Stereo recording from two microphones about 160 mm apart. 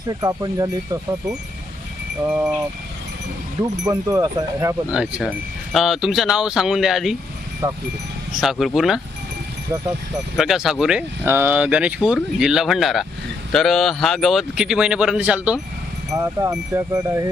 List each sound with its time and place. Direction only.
0.1 s speech: 25° right (ahead or behind)
2.2 s speech: 10° right (ahead or behind)
3.6 s speech: 20° right (ahead or behind)
4.9 s speech: 5° right (ahead or behind)
7.6 s speech: 15° right (ahead or behind)
8.4 s speech: centre (ahead or behind)
10.3 s speech: centre (ahead or behind)
16.1 s speech: 20° right (ahead or behind)